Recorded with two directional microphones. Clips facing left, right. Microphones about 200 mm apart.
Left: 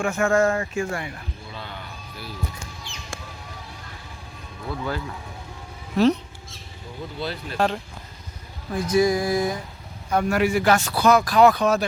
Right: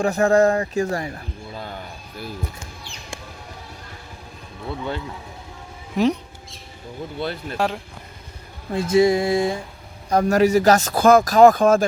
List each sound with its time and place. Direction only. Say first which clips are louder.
0.0 s speech: right 4 dB; 35° right (ahead or behind)
1.5 s music: right 4 dB; 45° right (ahead or behind)
4.7 s a sound: right 1 dB; 25° right (ahead or behind)
6.0 s speech: left 1 dB; 15° right (ahead or behind)
7.5 s speech: left 1 dB; 5° right (ahead or behind)
8.7 s a sound: right 3 dB; 25° right (ahead or behind)
10.1 s speech: right 5 dB; 40° right (ahead or behind)